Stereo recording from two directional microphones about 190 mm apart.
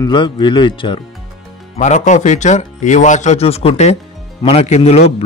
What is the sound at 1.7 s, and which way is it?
A man's voice, 40° left (ahead or behind).